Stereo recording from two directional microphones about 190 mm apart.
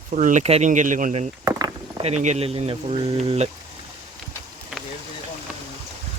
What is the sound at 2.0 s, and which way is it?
Speech, 35° right (ahead or behind).